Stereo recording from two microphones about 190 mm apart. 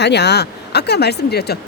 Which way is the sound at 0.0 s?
65° left (ahead or behind).